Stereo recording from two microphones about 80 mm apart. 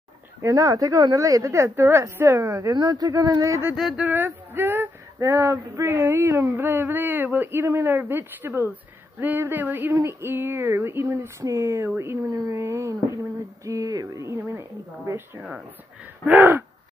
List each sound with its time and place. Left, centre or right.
0.4 s a woman's voice: right
2.7 s speech: right
3.7 s speech: centre
4.0 s a sound: right
9.9 s a woman's voice: right
12.3 s a woman's voice: right
16.3 s a sound: right